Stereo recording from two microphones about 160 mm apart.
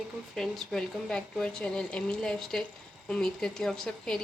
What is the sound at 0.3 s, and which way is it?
Speech, 5° left (ahead or behind).